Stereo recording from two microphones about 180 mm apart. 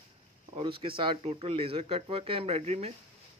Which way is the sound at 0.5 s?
30° right (ahead or behind).